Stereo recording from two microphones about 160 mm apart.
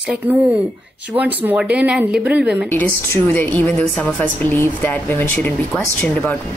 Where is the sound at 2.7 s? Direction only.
15° left (ahead or behind).